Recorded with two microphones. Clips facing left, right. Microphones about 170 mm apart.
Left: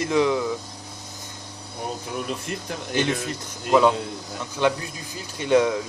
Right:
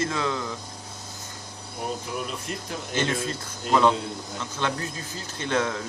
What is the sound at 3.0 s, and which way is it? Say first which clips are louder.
Speech: left 2 dB; 15° left (ahead or behind).